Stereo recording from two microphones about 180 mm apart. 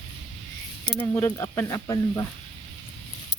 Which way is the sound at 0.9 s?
10° left (ahead or behind).